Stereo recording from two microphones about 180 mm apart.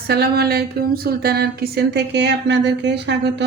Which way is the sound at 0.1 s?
60° right (ahead or behind).